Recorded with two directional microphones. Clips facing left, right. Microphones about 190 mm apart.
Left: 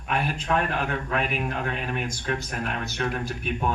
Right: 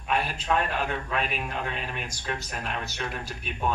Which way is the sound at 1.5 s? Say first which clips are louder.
Left 4 dB; 55° left (ahead or behind).